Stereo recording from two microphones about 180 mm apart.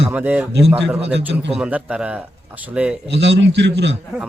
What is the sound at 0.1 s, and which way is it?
Speech, 10° right (ahead or behind).